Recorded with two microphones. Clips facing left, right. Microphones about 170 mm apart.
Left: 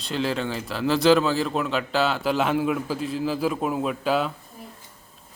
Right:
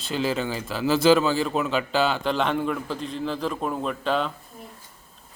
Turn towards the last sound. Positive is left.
turn(degrees=5)  # may be behind; listen again after turning